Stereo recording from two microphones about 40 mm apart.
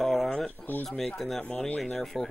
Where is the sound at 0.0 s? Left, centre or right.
Centre.